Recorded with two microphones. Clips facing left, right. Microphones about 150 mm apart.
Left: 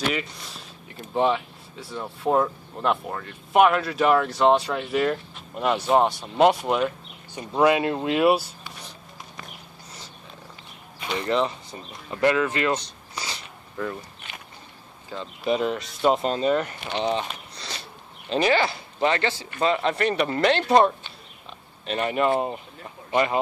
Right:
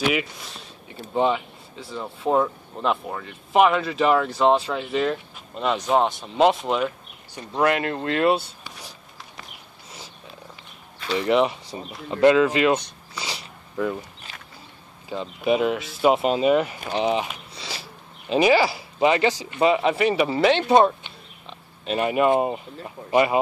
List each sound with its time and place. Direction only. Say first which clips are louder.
0.0 s speech: right 3 dB; 5° right (ahead or behind)
11.1 s speech: right 4 dB; 15° right (ahead or behind)
13.2 s a sound: right 2 dB; 10° right (ahead or behind)
15.0 s speech: right 3 dB; 10° right (ahead or behind)
17.0 s sniff: right 2 dB; 5° right (ahead or behind)
18.3 s speech: right 4 dB; 5° right (ahead or behind)